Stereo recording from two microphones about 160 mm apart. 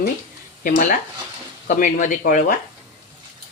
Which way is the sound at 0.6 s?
55° left (ahead or behind).